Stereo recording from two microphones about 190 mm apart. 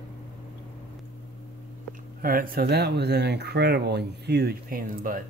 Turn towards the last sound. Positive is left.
turn(degrees=-45)  # may be behind; listen again after turning